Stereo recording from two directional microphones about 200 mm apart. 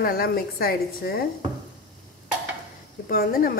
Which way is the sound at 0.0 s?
50° left (ahead or behind).